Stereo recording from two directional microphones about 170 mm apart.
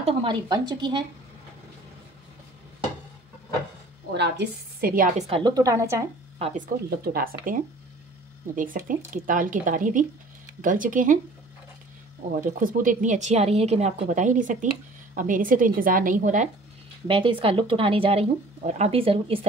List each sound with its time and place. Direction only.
0.0 s a woman's voice: 30° right (ahead or behind)
4.1 s a woman's voice: 85° right; by 5.1 s 60° right (ahead or behind)
5.3 s a woman's voice: 25° right (ahead or behind)
6.3 s speech: 35° right (ahead or behind)
7.1 s a woman's voice: 55° right (ahead or behind)
12.4 s speech: 55° right (ahead or behind)
17.1 s speech: 30° right (ahead or behind)